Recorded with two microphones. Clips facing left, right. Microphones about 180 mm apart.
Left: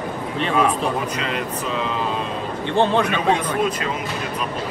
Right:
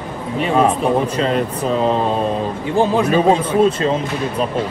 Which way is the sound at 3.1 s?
35° right (ahead or behind).